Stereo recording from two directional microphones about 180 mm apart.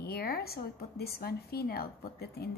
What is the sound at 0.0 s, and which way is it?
Speech, 60° left (ahead or behind).